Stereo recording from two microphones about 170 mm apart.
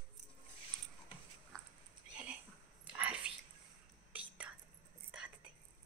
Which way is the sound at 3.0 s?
10° right (ahead or behind).